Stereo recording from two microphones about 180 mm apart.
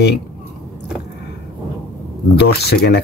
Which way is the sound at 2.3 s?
65° left (ahead or behind).